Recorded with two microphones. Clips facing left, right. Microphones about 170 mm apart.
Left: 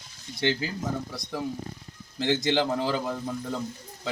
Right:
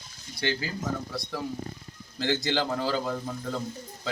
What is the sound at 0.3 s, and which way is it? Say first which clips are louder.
Speech: left 3 dB; 20° left (ahead or behind).